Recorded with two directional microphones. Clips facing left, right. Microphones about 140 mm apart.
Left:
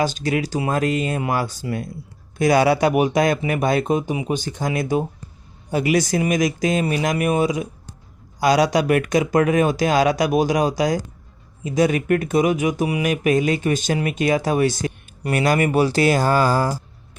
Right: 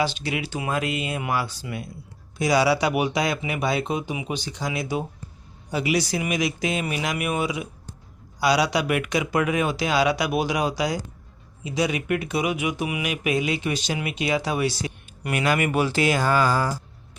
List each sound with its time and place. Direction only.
0.0 s speech: 45° left (ahead or behind)